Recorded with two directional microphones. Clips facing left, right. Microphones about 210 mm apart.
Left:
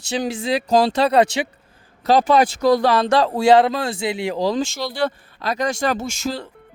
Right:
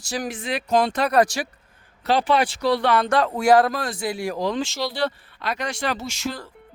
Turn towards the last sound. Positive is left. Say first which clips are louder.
# left 4 dB
turn(degrees=50)  # may be behind; listen again after turning